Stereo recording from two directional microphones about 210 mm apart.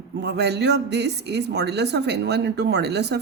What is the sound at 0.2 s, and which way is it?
A woman's voice, 50° right (ahead or behind).